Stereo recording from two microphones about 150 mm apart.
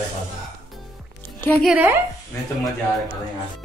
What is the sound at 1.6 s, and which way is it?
Speech, 5° right (ahead or behind).